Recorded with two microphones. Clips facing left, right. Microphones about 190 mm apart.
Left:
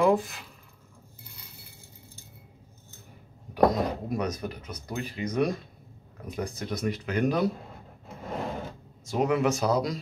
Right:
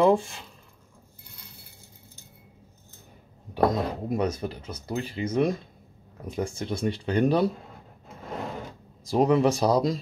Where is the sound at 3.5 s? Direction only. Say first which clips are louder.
Left 1 dB; 25° right (ahead or behind).